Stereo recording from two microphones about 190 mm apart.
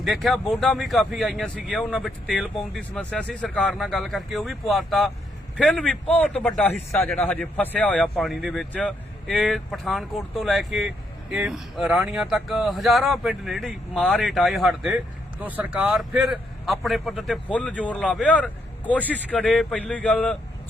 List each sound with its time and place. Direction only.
0.0 s a man's voice: centre (ahead or behind)